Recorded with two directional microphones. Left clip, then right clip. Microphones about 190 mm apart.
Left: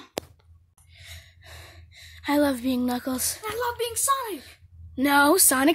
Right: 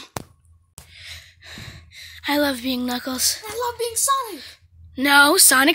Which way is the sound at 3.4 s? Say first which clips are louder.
Right 2 dB; 35° right (ahead or behind).